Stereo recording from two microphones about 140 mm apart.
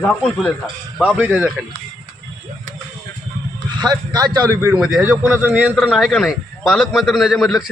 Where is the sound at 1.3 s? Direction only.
15° right (ahead or behind).